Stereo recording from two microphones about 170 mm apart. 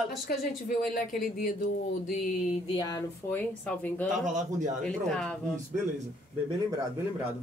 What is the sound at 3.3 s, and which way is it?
Speech, 10° left (ahead or behind).